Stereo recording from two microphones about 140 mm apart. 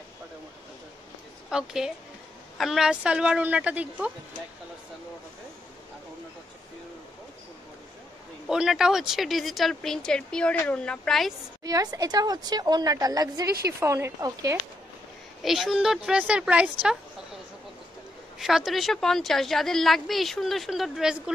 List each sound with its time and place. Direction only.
1.5 s a woman's voice: 5° right (ahead or behind)
8.5 s speech: 5° right (ahead or behind)
11.6 s a woman's voice: 25° right (ahead or behind)
15.4 s speech: centre (ahead or behind)
18.4 s speech: centre (ahead or behind)